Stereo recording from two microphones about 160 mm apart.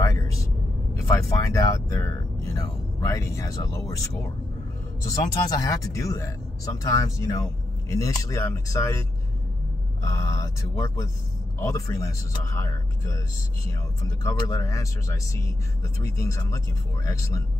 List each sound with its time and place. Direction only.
1.1 s speech: 20° left (ahead or behind)
10.0 s speech: 20° left (ahead or behind)